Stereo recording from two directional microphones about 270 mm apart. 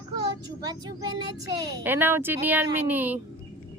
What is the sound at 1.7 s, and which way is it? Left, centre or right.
Speech, centre.